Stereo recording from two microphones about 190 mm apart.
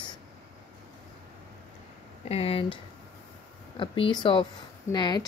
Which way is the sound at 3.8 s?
25° left (ahead or behind).